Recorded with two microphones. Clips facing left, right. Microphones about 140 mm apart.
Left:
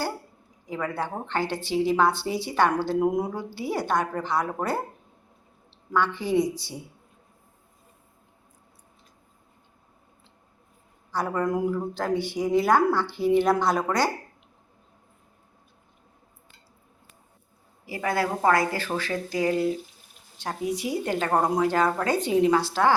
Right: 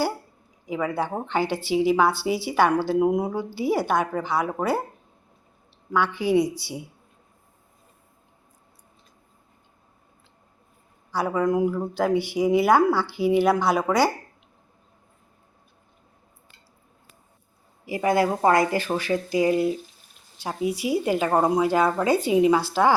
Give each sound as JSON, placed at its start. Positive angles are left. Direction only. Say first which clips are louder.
{"t": 0.7, "sound": "a woman's voice", "louder": "right 4 dB", "side_deg": -10}
{"t": 5.9, "sound": "a woman's voice", "louder": "right 3 dB", "side_deg": -5}
{"t": 11.1, "sound": "speech", "louder": "right 3 dB", "side_deg": -5}
{"t": 17.8, "sound": "a woman's voice", "louder": "right 5 dB", "side_deg": -15}